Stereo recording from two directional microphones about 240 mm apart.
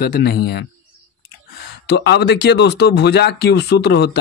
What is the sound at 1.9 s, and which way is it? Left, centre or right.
Speech, left.